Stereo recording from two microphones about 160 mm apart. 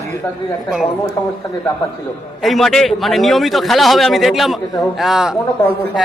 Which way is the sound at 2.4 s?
Centre (ahead or behind).